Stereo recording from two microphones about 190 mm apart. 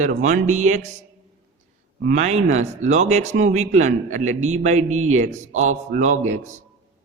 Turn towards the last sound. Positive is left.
turn(degrees=-40)  # may be behind; listen again after turning